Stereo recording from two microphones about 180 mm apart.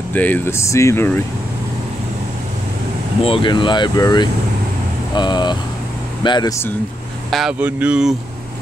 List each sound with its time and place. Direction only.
0.1 s speech: 10° left (ahead or behind)
3.3 s speech: 30° left (ahead or behind)
7.2 s speech: centre (ahead or behind)